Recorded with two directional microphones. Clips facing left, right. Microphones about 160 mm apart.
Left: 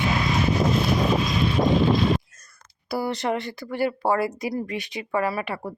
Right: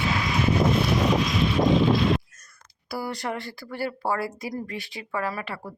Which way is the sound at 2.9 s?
25° left (ahead or behind).